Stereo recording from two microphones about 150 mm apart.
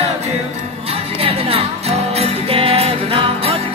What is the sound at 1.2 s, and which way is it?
Music, 40° right (ahead or behind).